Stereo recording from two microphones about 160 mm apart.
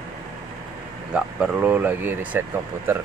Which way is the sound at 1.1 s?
10° right (ahead or behind).